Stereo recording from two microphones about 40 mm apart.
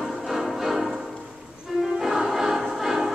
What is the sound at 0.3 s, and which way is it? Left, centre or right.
Music, centre.